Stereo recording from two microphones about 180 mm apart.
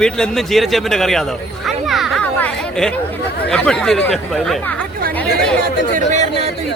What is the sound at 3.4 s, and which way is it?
A man's voice, 5° left (ahead or behind).